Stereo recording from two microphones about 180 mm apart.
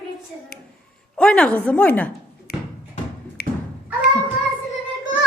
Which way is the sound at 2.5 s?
60° left (ahead or behind).